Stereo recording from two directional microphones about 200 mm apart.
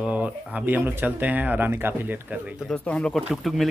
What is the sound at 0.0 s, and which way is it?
Speech, 5° right (ahead or behind).